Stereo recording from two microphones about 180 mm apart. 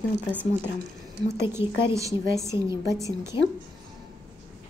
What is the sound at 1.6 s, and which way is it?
Speech, 30° left (ahead or behind).